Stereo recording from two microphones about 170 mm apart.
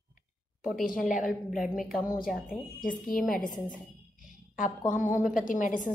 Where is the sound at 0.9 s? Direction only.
50° left (ahead or behind).